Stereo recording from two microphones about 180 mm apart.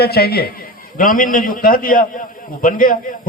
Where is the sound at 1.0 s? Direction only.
50° left (ahead or behind).